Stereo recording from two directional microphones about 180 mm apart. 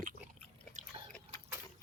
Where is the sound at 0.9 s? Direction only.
35° right (ahead or behind).